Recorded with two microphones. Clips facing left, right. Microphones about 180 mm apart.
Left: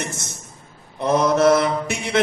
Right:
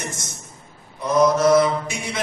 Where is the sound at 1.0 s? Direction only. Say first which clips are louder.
Left 1 dB; 60° left (ahead or behind).